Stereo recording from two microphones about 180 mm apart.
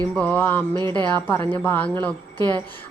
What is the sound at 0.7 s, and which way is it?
Speech, 25° right (ahead or behind).